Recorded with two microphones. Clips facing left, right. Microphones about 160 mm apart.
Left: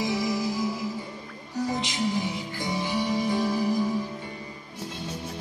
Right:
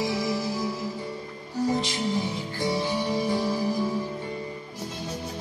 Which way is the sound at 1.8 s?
15° left (ahead or behind).